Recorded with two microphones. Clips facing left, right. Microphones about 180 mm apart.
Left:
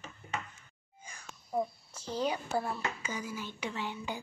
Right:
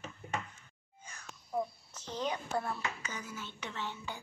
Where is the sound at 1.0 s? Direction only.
10° left (ahead or behind).